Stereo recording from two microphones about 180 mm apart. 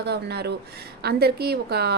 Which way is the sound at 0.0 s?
65° right (ahead or behind).